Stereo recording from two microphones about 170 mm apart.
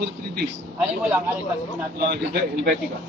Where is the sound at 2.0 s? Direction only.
65° right (ahead or behind).